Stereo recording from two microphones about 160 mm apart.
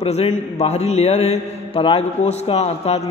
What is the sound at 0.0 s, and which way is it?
A man's voice, 40° left (ahead or behind).